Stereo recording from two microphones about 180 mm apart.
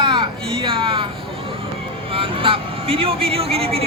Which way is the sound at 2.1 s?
30° right (ahead or behind).